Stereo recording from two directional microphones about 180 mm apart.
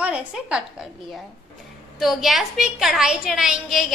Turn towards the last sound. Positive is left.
turn(degrees=0)  # may be behind; listen again after turning